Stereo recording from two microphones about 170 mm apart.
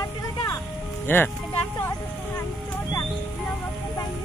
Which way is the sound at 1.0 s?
10° left (ahead or behind).